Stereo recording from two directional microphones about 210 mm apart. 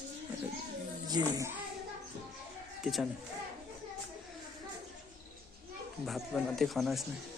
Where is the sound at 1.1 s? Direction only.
20° right (ahead or behind).